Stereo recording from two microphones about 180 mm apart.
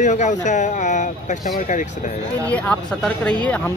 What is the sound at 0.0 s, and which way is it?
Speech, 40° left (ahead or behind).